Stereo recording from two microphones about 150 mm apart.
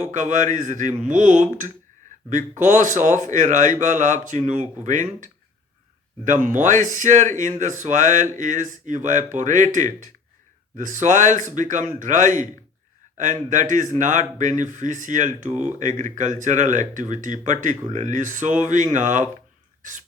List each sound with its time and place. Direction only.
0.0 s speech: 55° right (ahead or behind)
19.8 s throat clearing: 60° right (ahead or behind)